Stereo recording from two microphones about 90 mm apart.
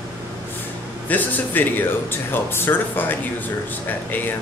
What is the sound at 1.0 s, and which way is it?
Speech, 20° left (ahead or behind).